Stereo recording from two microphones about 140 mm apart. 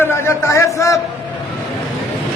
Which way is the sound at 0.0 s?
20° left (ahead or behind).